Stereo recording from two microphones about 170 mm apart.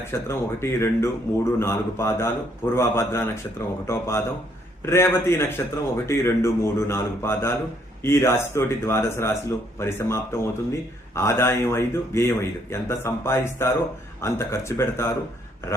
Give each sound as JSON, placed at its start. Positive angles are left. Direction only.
{"t": 0.1, "sound": "a man's voice", "side_deg": 15}